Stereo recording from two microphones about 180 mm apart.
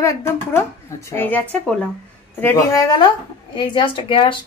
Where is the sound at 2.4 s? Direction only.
20° left (ahead or behind).